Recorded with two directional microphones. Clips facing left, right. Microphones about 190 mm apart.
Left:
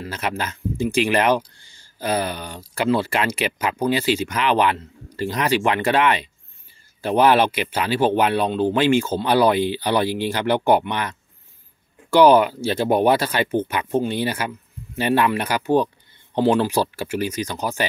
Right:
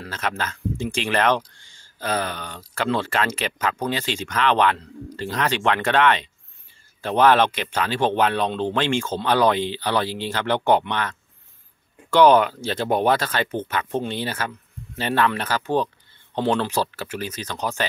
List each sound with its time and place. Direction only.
0.1 s speech: 10° left (ahead or behind)